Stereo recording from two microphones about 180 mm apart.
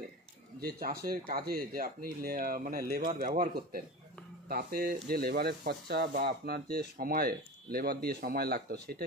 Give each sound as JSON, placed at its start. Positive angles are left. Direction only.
{"t": 0.6, "sound": "speech", "side_deg": -55}